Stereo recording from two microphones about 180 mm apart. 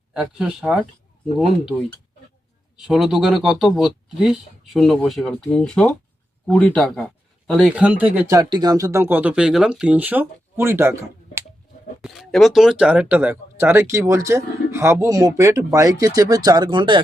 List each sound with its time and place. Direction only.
0.1 s speech: 5° right (ahead or behind)
2.7 s speech: 5° right (ahead or behind)
8.4 s speech: 25° right (ahead or behind)
12.0 s speech: centre (ahead or behind); by 17.0 s 25° right (ahead or behind)